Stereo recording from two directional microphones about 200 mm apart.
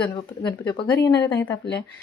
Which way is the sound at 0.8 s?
10° left (ahead or behind).